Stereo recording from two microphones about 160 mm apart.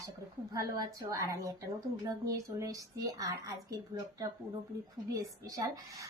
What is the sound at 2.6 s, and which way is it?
A woman's voice, 20° right (ahead or behind).